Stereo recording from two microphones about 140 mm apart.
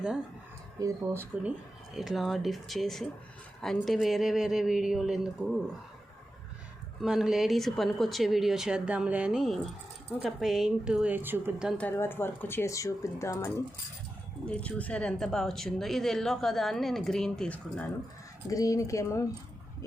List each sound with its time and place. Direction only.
0.8 s a woman's voice: 20° right (ahead or behind)
1.9 s speech: centre (ahead or behind)
7.0 s a woman's voice: 5° right (ahead or behind)
11.8 s speech: 15° left (ahead or behind)
14.4 s speech: 10° left (ahead or behind)
18.4 s speech: 25° left (ahead or behind)